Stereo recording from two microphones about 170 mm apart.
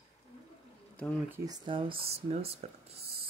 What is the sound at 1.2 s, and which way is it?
Speech, 15° right (ahead or behind).